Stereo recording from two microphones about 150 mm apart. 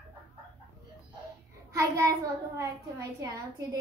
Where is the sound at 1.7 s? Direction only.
20° right (ahead or behind).